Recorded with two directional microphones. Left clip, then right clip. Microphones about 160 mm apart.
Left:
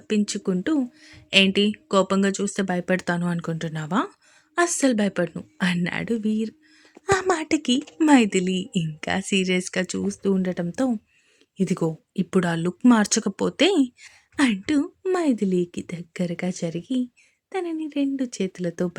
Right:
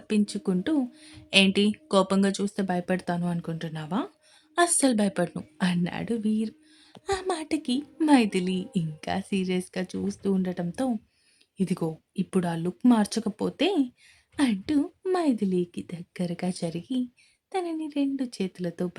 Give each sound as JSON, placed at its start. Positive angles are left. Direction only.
{"t": 0.1, "sound": "speech", "side_deg": 15}
{"t": 4.5, "sound": "speech", "side_deg": 10}
{"t": 7.0, "sound": "speech", "side_deg": 40}